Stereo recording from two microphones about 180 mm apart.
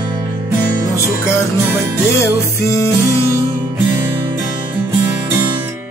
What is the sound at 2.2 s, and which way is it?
Music, 15° left (ahead or behind).